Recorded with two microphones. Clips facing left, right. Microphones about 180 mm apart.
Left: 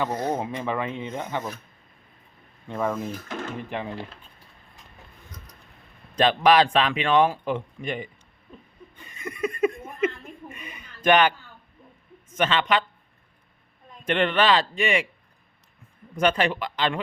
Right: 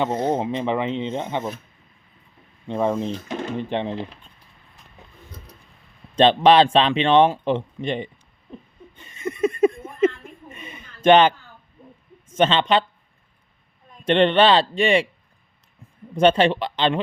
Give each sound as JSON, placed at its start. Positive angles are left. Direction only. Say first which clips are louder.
{"t": 0.0, "sound": "speech", "louder": "right 4 dB", "side_deg": -25}
{"t": 2.6, "sound": "speech", "louder": "right 5 dB", "side_deg": -25}
{"t": 6.1, "sound": "speech", "louder": "right 4 dB", "side_deg": -25}
{"t": 9.0, "sound": "laughter", "louder": "right 7 dB", "side_deg": -25}
{"t": 10.5, "sound": "a sound", "louder": "right 2 dB", "side_deg": -25}
{"t": 12.3, "sound": "speech", "louder": "right 5 dB", "side_deg": -25}
{"t": 14.0, "sound": "speech", "louder": "right 6 dB", "side_deg": -30}
{"t": 16.1, "sound": "speech", "louder": "right 6 dB", "side_deg": -30}